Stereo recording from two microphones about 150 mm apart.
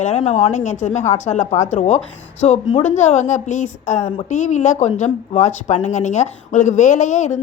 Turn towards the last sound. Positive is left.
turn(degrees=50)  # may be behind; listen again after turning